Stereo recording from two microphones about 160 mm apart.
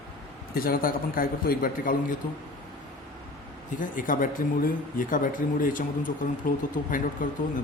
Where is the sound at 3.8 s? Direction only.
55° left (ahead or behind).